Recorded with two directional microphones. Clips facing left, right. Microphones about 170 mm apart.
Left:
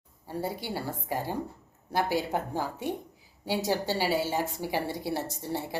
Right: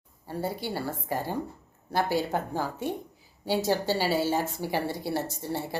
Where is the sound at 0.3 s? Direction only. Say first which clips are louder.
Right 1 dB; 15° left (ahead or behind).